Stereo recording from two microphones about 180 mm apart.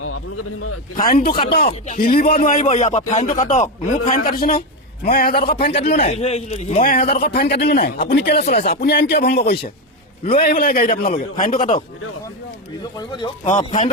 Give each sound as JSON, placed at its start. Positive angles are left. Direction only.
{"t": 0.9, "sound": "a man's voice", "side_deg": 50}
{"t": 4.1, "sound": "a man's voice", "side_deg": 55}
{"t": 5.4, "sound": "a man's voice", "side_deg": 30}
{"t": 13.0, "sound": "speech", "side_deg": 25}
{"t": 13.4, "sound": "a man's voice", "side_deg": 40}